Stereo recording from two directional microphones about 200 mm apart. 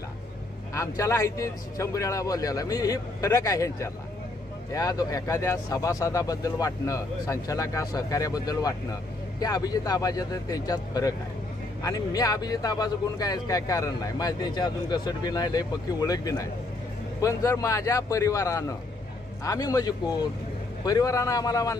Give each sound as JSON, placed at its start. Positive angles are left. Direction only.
{"t": 0.7, "sound": "speech", "side_deg": 15}